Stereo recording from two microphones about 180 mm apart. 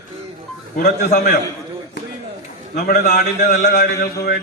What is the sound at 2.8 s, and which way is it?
A man's voice, 60° left (ahead or behind).